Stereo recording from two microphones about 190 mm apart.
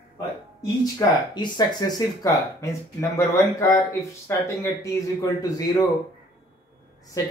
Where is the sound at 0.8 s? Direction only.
20° left (ahead or behind).